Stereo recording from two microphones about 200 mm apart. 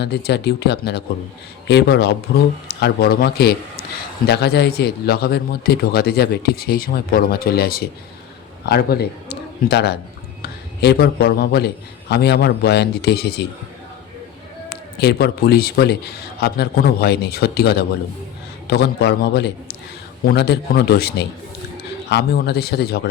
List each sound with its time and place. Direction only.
0.0 s a man's voice: 55° left (ahead or behind)
14.7 s a man's voice: 55° left (ahead or behind)